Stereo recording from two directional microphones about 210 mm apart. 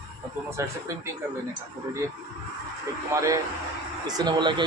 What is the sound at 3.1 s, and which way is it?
Speech, 15° right (ahead or behind).